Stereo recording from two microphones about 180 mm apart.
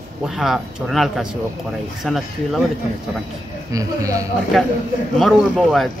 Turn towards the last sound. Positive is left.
turn(degrees=0)  # may be behind; listen again after turning